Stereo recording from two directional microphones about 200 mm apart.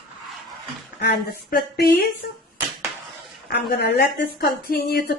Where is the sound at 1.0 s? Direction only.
50° left (ahead or behind).